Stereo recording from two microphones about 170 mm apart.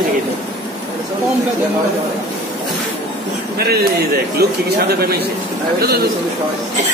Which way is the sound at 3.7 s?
65° right (ahead or behind).